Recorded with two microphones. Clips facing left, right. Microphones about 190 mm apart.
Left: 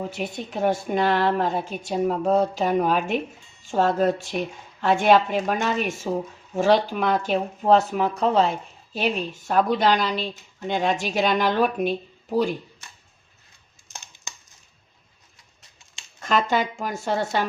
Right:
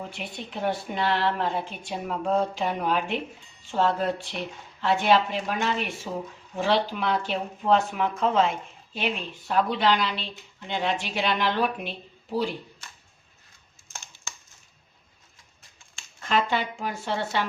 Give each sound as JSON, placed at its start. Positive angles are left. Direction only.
{"t": 0.1, "sound": "speech", "side_deg": 45}
{"t": 13.9, "sound": "crushing", "side_deg": 20}
{"t": 16.2, "sound": "speech", "side_deg": 45}